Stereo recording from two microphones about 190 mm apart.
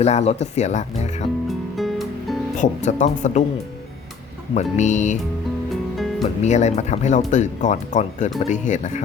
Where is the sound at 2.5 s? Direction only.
40° left (ahead or behind).